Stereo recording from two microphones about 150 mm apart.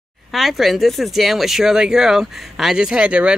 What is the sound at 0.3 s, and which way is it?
Speech, centre (ahead or behind).